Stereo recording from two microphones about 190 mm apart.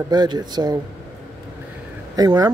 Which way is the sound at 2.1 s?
20° right (ahead or behind).